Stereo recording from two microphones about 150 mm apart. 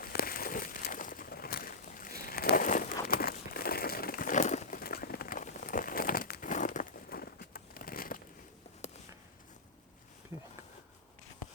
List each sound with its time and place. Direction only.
0.0 s a sound: 80° left; by 4.8 s 55° left (ahead or behind)
4.8 s crumpling: 90° left
6.5 s crumpling: 55° left (ahead or behind); by 8.2 s 75° left (ahead or behind)